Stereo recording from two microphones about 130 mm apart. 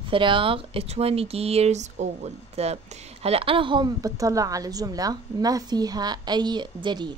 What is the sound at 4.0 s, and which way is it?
A woman's voice, 25° right (ahead or behind).